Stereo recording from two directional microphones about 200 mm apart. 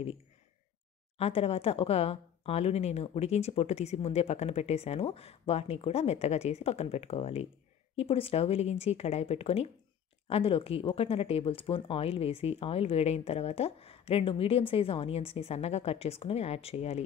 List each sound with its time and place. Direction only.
1.1 s speech: 30° left (ahead or behind)